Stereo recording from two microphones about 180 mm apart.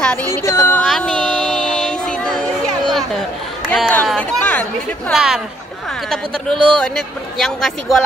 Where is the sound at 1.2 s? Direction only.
5° left (ahead or behind).